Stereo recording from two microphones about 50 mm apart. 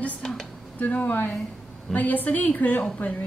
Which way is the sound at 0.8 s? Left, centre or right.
Left.